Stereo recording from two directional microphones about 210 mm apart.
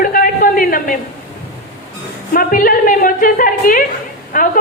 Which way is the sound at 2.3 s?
40° left (ahead or behind).